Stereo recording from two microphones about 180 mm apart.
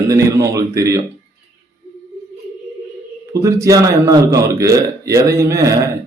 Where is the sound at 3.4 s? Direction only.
15° right (ahead or behind).